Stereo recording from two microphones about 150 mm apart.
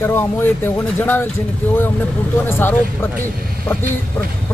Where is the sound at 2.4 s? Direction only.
15° left (ahead or behind).